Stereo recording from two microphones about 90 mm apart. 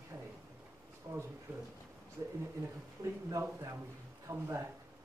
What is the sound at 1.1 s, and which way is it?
Speech, 25° right (ahead or behind).